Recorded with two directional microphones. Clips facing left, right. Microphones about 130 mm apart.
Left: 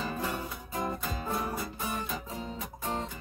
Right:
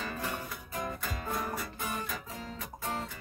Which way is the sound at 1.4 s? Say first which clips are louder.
Left 2 dB; 15° left (ahead or behind).